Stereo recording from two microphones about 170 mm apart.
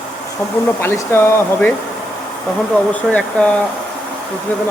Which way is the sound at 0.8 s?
15° left (ahead or behind).